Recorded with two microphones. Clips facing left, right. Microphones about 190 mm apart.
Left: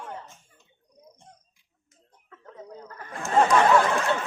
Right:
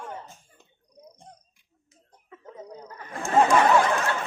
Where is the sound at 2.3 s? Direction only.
15° right (ahead or behind).